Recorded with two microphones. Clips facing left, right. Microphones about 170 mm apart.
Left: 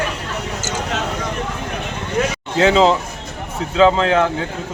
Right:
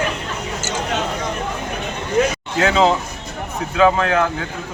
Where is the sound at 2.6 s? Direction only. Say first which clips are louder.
Left 3 dB; 25° left (ahead or behind).